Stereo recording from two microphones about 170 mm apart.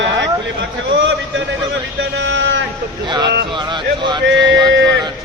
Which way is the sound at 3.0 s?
25° right (ahead or behind).